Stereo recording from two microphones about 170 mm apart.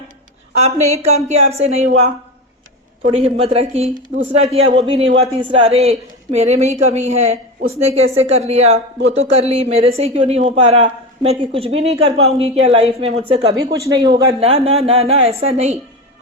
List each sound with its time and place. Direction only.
0.6 s speech: 40° right (ahead or behind)
3.1 s speech: 35° right (ahead or behind)
13.8 s speech: 25° right (ahead or behind)